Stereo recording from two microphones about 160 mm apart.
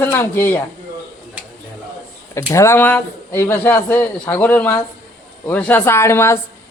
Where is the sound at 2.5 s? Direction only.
20° left (ahead or behind).